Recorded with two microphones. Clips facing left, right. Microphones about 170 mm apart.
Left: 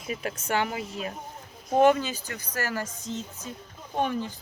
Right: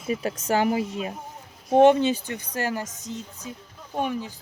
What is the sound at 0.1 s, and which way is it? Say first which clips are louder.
Speech: right 5 dB; 30° right (ahead or behind).